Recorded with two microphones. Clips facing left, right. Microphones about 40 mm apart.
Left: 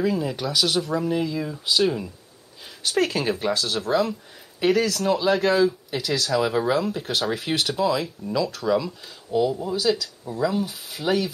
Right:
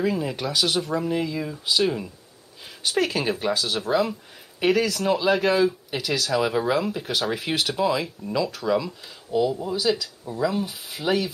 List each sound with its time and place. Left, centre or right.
0.0 s speech: centre
2.8 s speech: centre